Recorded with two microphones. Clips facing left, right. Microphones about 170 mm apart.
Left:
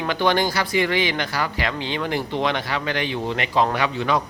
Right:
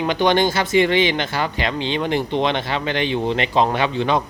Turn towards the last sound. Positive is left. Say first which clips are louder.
# right 3 dB
turn(degrees=-25)  # may be behind; listen again after turning